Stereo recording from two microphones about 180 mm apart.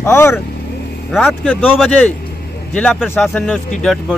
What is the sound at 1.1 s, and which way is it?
Speech, 5° left (ahead or behind).